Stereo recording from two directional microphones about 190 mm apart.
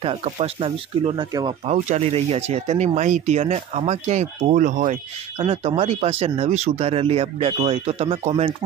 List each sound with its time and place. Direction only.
0.0 s speech: 30° right (ahead or behind)
1.7 s speech: 35° right (ahead or behind)